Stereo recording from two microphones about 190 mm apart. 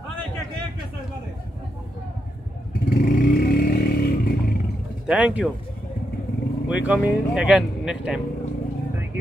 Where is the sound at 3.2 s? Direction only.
55° left (ahead or behind).